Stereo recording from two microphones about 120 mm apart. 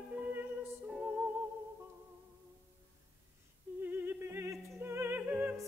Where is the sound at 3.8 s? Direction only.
15° right (ahead or behind).